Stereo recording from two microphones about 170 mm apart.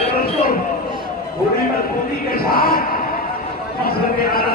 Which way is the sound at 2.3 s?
60° left (ahead or behind).